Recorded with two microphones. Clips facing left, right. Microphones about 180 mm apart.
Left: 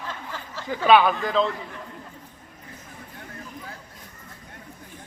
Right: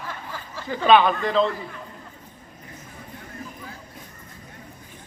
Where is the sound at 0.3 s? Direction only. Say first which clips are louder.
Even; 10° right (ahead or behind).